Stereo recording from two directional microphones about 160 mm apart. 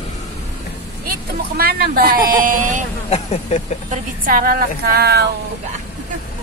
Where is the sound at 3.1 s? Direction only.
45° left (ahead or behind).